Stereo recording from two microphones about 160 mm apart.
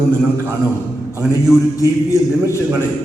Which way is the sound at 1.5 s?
Centre (ahead or behind).